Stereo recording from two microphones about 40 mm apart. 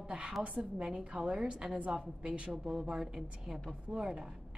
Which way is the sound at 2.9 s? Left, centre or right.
Centre.